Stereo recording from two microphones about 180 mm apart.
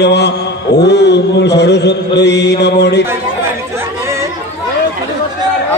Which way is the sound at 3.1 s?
15° right (ahead or behind).